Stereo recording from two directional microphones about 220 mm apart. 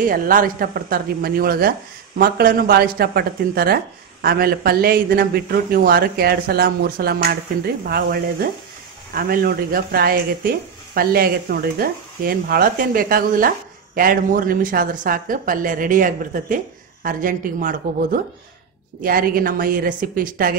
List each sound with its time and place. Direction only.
0.0 s a woman's voice: 40° right (ahead or behind)